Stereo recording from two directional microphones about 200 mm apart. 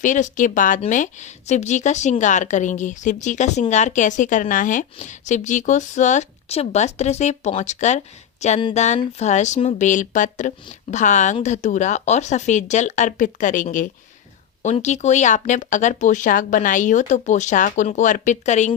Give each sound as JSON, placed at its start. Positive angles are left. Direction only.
{"t": 0.0, "sound": "a woman's voice", "side_deg": 40}